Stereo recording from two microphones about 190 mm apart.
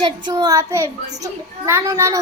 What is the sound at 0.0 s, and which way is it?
A child's voice, 20° right (ahead or behind).